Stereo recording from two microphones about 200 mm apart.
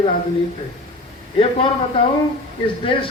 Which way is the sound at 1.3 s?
25° left (ahead or behind).